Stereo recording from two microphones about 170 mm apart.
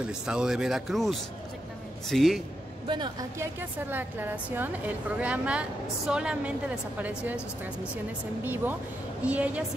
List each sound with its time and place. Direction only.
0.0 s speech: 5° right (ahead or behind)
2.9 s speech: 25° right (ahead or behind)
3.9 s a woman's voice: 10° right (ahead or behind)
9.2 s a woman's voice: 10° right (ahead or behind)